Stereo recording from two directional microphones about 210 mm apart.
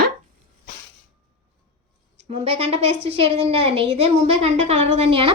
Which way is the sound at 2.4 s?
30° right (ahead or behind).